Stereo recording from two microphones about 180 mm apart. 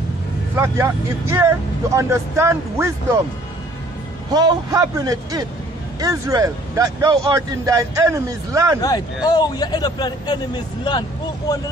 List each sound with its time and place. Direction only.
0.6 s speech: 15° right (ahead or behind)
4.3 s a man's voice: 20° right (ahead or behind)
8.8 s speech: 20° left (ahead or behind)